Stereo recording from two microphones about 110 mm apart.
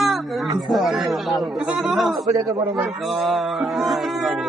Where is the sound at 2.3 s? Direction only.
35° right (ahead or behind).